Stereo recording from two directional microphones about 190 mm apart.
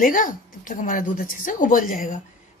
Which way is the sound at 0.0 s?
45° left (ahead or behind).